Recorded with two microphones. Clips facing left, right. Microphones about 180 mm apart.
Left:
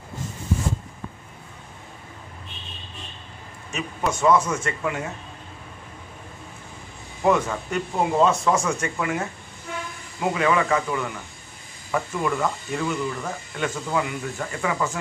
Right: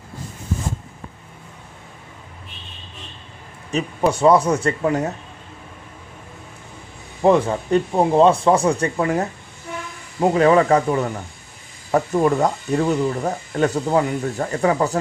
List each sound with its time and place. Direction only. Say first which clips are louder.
3.7 s speech: right 7 dB; 35° right (ahead or behind)
7.2 s speech: right 5 dB; 30° right (ahead or behind)